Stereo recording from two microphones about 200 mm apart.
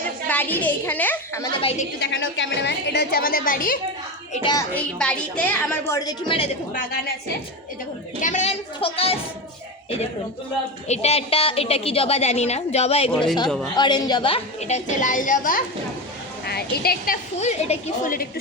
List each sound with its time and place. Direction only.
0.3 s a child's voice: 10° left (ahead or behind)
1.6 s a woman's voice: 35° left (ahead or behind)
2.0 s a woman's voice: 65° left (ahead or behind); by 3.8 s 45° left (ahead or behind)
4.7 s a woman's voice: 5° left (ahead or behind); by 6.4 s 20° left (ahead or behind)
8.2 s a sound: 35° left (ahead or behind)
10.8 s a woman's voice: 35° left (ahead or behind)
13.1 s speech: 5° left (ahead or behind)
13.7 s a woman's voice: 20° left (ahead or behind); by 17.2 s 50° left (ahead or behind)
17.4 s a woman's voice: 40° left (ahead or behind)